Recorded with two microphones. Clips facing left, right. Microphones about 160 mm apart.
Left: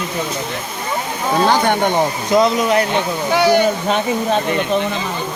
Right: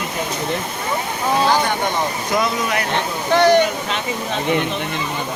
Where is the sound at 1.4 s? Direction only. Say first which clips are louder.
Left 3 dB; 60° left (ahead or behind).